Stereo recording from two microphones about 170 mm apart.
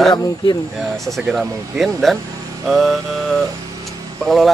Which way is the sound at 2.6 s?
Centre (ahead or behind).